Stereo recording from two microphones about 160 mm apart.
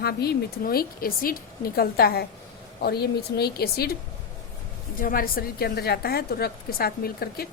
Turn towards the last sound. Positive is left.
turn(degrees=70)  # may be behind; listen again after turning